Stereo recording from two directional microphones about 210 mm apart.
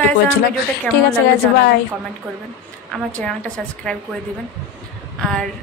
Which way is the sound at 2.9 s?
5° left (ahead or behind).